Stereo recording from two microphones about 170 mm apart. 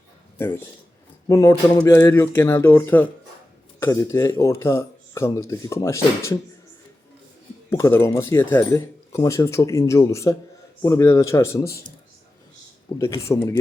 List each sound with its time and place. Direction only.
1.3 s speech: 20° left (ahead or behind)
7.7 s speech: 15° left (ahead or behind)
13.0 s speech: 15° left (ahead or behind)